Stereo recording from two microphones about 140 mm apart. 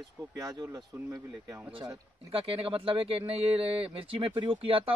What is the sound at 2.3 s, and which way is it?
Speech, 40° right (ahead or behind).